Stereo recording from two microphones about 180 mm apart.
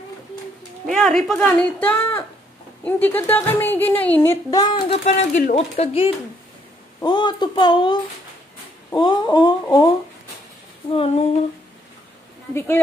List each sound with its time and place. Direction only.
0.8 s a woman's voice: centre (ahead or behind); by 6.0 s 40° left (ahead or behind)
7.0 s speech: 25° left (ahead or behind)
12.5 s a woman's voice: 10° left (ahead or behind)